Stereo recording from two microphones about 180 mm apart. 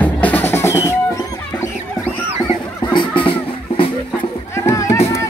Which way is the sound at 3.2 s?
30° left (ahead or behind).